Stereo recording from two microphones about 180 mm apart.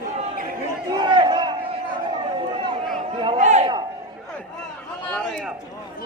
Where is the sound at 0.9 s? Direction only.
25° right (ahead or behind).